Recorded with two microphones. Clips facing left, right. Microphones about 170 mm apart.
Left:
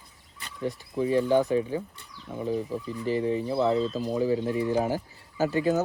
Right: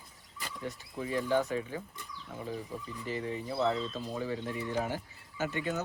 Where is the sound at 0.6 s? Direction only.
30° left (ahead or behind).